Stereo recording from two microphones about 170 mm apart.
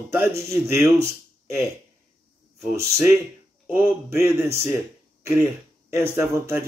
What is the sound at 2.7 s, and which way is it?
Speech, 65° right (ahead or behind).